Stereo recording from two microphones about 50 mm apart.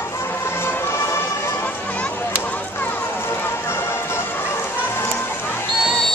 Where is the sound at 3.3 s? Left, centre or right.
Left.